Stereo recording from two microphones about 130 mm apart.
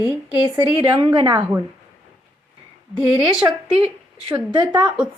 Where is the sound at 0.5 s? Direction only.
35° right (ahead or behind).